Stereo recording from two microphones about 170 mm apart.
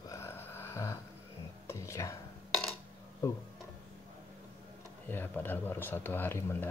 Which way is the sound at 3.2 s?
15° left (ahead or behind).